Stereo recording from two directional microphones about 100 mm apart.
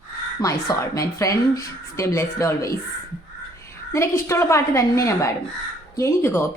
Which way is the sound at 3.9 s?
25° left (ahead or behind).